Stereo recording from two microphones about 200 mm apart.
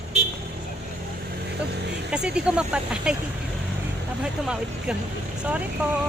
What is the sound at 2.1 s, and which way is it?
Speech, 5° right (ahead or behind).